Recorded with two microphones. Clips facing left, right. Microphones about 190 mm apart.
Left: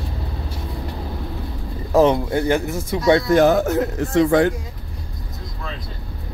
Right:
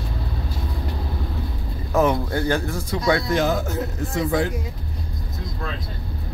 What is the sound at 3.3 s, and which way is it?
A man's voice, 65° left (ahead or behind).